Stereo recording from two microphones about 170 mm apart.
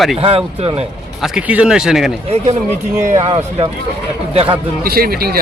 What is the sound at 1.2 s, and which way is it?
Speech, 5° right (ahead or behind).